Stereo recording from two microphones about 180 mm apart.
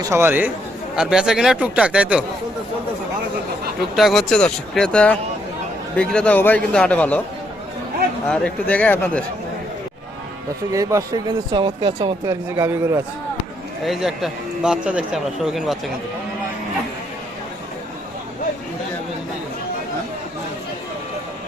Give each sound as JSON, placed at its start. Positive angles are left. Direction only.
{"t": 0.0, "sound": "a man's voice", "side_deg": -15}
{"t": 3.8, "sound": "a man's voice", "side_deg": 0}
{"t": 8.3, "sound": "a man's voice", "side_deg": 5}
{"t": 10.7, "sound": "speech", "side_deg": -15}
{"t": 13.8, "sound": "a man's voice", "side_deg": 0}